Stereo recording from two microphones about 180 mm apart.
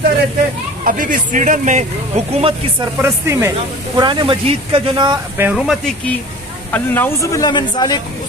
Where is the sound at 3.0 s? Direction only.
15° right (ahead or behind).